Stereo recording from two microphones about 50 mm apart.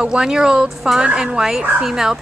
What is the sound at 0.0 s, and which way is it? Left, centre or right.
A woman's voice, centre.